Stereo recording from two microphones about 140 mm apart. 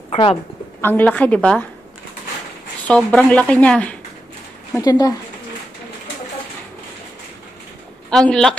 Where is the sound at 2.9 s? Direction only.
10° left (ahead or behind).